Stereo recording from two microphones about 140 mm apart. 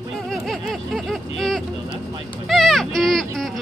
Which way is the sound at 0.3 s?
Centre (ahead or behind).